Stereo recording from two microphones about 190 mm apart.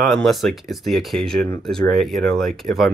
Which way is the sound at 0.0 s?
Centre (ahead or behind).